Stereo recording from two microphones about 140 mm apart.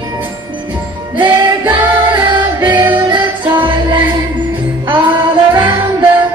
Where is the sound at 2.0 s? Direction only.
35° right (ahead or behind).